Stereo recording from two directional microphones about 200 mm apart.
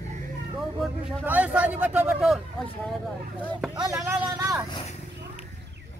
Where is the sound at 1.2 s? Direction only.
5° right (ahead or behind).